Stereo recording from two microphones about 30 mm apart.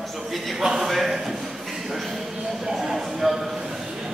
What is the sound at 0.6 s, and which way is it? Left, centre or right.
Speech, centre.